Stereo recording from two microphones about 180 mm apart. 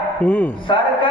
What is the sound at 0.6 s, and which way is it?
Speech, 25° left (ahead or behind).